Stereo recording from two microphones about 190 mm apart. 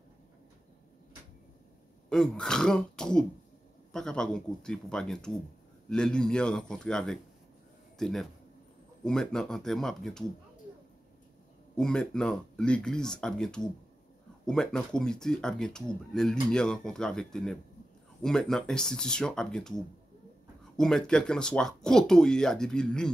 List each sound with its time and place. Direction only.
2.0 s speech: 5° left (ahead or behind)
11.7 s speech: 5° left (ahead or behind)